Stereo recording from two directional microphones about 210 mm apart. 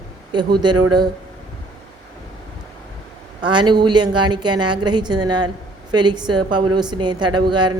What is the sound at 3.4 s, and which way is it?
A woman's voice, 20° right (ahead or behind).